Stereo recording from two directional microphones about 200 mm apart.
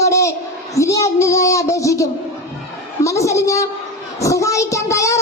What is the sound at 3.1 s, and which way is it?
Speech, 15° left (ahead or behind).